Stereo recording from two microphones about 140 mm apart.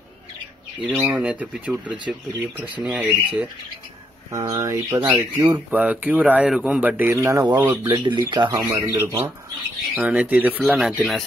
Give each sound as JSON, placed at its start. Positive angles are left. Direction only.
{"t": 0.8, "sound": "speech", "side_deg": -10}
{"t": 4.3, "sound": "speech", "side_deg": -25}
{"t": 5.0, "sound": "speech", "side_deg": -10}
{"t": 7.9, "sound": "speech", "side_deg": -30}
{"t": 8.8, "sound": "speech", "side_deg": -20}